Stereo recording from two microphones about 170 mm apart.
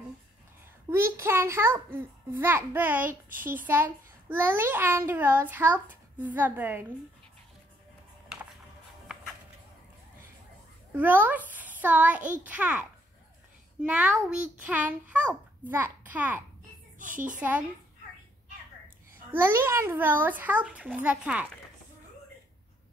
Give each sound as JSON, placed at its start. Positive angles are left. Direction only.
{"t": 0.8, "sound": "a child's voice", "side_deg": -15}
{"t": 10.9, "sound": "a child's voice", "side_deg": -10}
{"t": 13.8, "sound": "a child's voice", "side_deg": -5}
{"t": 17.0, "sound": "a child's voice", "side_deg": -50}
{"t": 17.4, "sound": "a child's voice", "side_deg": -10}
{"t": 19.3, "sound": "a child's voice", "side_deg": -15}